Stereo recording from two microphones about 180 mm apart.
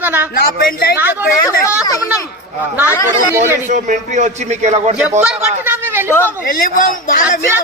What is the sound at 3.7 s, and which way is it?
A man's voice, 45° right (ahead or behind).